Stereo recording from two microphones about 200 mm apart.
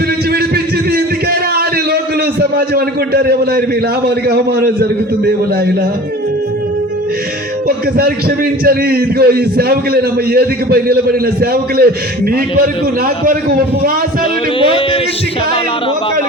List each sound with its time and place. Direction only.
2.6 s a man's voice: 50° right (ahead or behind)
8.6 s a man's voice: 50° right (ahead or behind)